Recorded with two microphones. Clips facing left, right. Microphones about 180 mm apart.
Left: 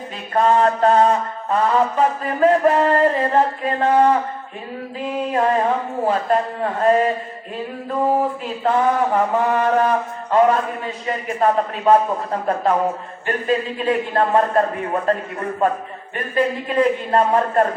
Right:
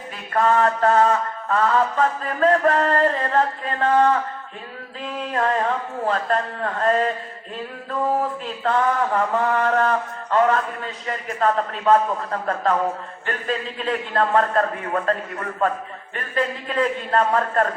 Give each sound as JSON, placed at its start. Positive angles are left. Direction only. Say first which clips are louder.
{"t": 0.3, "sound": "mantra", "louder": "left 3 dB", "side_deg": 20}
{"t": 8.6, "sound": "mantra", "louder": "left 3 dB", "side_deg": 15}
{"t": 13.8, "sound": "a man's voice", "louder": "left 2 dB", "side_deg": 20}
{"t": 16.1, "sound": "mantra", "louder": "left 5 dB", "side_deg": 15}